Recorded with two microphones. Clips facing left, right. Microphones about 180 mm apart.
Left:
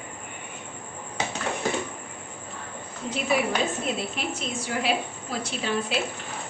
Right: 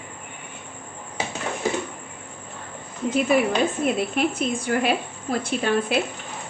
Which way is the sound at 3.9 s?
55° right (ahead or behind).